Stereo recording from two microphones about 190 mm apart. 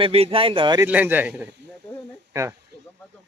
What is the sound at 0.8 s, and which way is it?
Speech, 10° right (ahead or behind).